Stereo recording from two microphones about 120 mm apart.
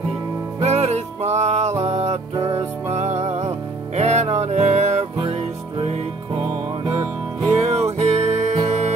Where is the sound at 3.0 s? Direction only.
70° right (ahead or behind).